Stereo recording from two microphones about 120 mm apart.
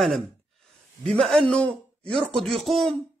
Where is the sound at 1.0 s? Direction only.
5° left (ahead or behind).